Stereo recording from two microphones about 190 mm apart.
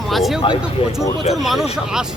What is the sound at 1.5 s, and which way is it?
Speech, centre (ahead or behind).